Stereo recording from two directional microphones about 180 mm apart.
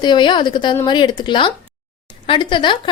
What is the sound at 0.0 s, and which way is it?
A woman's voice, 25° left (ahead or behind).